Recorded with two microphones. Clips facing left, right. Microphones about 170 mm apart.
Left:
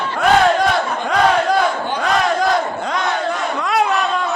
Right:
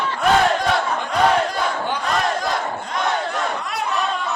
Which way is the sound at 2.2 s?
80° left.